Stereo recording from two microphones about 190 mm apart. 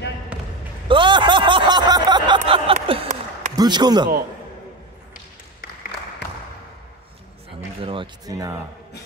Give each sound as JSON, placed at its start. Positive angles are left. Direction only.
{"t": 0.3, "sound": "basketball bounce", "side_deg": -5}
{"t": 0.8, "sound": "a sound", "side_deg": -25}
{"t": 3.5, "sound": "a man's voice", "side_deg": -20}
{"t": 5.6, "sound": "applause", "side_deg": 60}
{"t": 7.8, "sound": "speech", "side_deg": -25}